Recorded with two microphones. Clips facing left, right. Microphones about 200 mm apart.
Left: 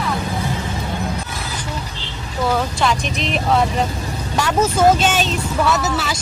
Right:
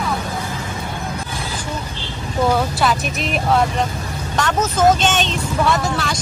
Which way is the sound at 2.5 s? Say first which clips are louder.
Left 1 dB; 5° right (ahead or behind).